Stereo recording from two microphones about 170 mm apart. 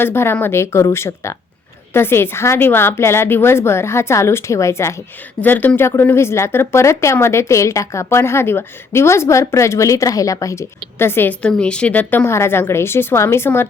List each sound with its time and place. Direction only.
0.0 s speech: 15° left (ahead or behind)